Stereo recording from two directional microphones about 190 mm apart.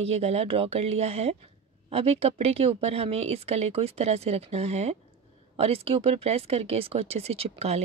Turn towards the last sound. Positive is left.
turn(degrees=-35)  # may be behind; listen again after turning